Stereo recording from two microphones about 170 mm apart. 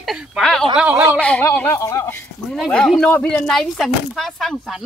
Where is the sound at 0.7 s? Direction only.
10° right (ahead or behind).